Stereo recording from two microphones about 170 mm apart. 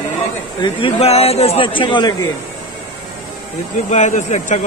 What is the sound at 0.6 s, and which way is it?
A man's voice, 35° left (ahead or behind).